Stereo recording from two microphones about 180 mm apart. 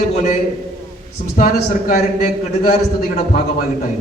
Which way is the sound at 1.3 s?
45° left (ahead or behind).